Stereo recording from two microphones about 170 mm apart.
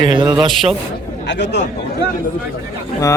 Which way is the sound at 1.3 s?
90° left.